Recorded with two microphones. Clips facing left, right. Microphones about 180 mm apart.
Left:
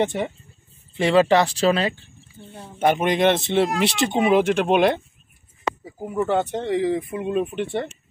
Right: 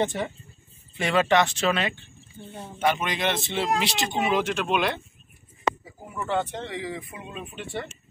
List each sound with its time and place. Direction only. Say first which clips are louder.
0.0 s speech: left 4 dB; 20° left (ahead or behind)
2.8 s speech: left 7 dB; 50° left (ahead or behind)
6.0 s speech: left 6 dB; 45° left (ahead or behind); by 7.7 s 60° left (ahead or behind)